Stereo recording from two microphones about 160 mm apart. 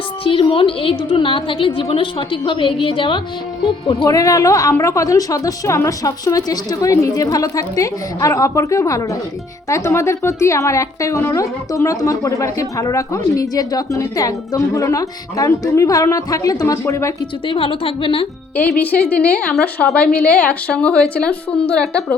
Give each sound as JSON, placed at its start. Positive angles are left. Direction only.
{"t": 0.3, "sound": "a woman's voice", "side_deg": 35}
{"t": 17.5, "sound": "a woman's voice", "side_deg": 35}
{"t": 18.5, "sound": "a woman's voice", "side_deg": 10}